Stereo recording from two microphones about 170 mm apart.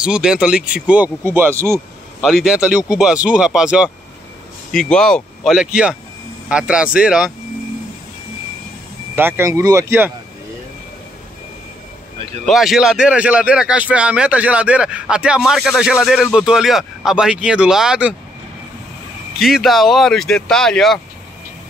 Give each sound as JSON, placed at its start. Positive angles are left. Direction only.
{"t": 0.0, "sound": "speech", "side_deg": -5}
{"t": 2.2, "sound": "speech", "side_deg": 0}
{"t": 9.1, "sound": "speech", "side_deg": -15}
{"t": 12.4, "sound": "speech", "side_deg": 0}
{"t": 19.3, "sound": "speech", "side_deg": 0}